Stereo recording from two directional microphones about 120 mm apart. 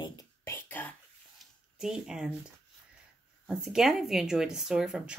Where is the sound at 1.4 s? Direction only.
5° right (ahead or behind).